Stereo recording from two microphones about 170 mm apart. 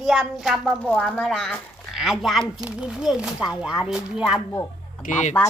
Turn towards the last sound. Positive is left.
turn(degrees=45)  # may be behind; listen again after turning